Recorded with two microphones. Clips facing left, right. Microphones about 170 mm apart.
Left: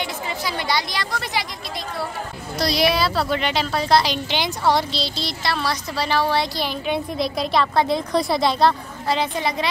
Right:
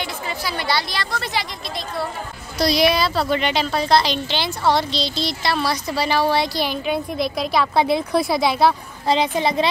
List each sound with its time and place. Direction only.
0.0 s a woman's voice: 20° left (ahead or behind)
2.6 s a woman's voice: centre (ahead or behind)
9.0 s a woman's voice: 20° right (ahead or behind)